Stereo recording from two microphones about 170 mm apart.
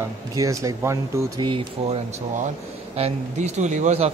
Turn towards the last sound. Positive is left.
turn(degrees=-40)  # may be behind; listen again after turning